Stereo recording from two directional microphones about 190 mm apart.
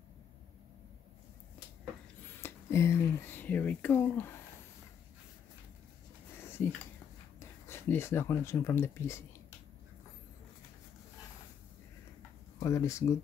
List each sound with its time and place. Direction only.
2.4 s speech: 15° left (ahead or behind)
7.3 s speech: 15° left (ahead or behind)
12.5 s speech: 15° left (ahead or behind)